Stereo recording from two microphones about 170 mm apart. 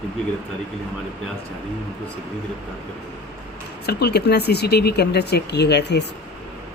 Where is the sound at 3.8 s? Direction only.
75° left (ahead or behind).